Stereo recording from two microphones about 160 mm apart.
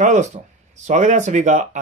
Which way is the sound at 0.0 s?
50° right (ahead or behind).